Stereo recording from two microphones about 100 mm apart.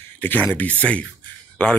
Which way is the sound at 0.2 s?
20° left (ahead or behind).